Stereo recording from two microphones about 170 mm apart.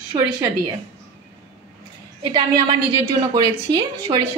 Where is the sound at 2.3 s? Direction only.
30° right (ahead or behind).